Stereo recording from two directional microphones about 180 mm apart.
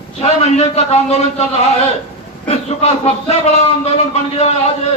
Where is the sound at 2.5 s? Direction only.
35° left (ahead or behind).